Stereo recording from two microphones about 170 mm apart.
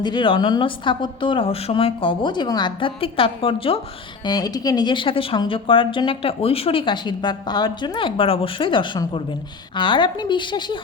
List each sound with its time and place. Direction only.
0.0 s speech: 25° left (ahead or behind)